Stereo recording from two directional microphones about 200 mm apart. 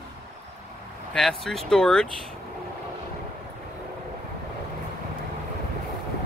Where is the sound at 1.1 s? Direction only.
Centre (ahead or behind).